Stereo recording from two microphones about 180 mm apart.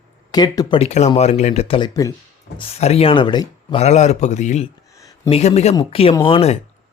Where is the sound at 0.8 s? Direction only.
40° left (ahead or behind); by 2.1 s 20° left (ahead or behind).